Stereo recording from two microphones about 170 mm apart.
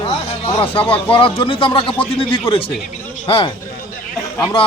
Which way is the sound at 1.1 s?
30° left (ahead or behind).